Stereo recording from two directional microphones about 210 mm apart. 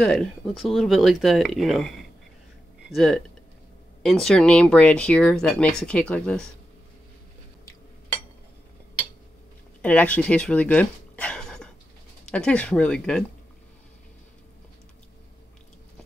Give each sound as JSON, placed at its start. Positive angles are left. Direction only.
{"t": 0.0, "sound": "speech", "side_deg": 0}
{"t": 9.8, "sound": "speech", "side_deg": 5}